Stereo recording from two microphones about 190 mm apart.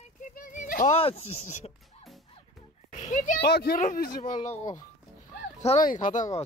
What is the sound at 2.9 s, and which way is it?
Speech, 40° left (ahead or behind).